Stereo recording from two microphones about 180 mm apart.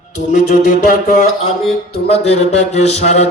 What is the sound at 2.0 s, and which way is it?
Speech, 35° left (ahead or behind).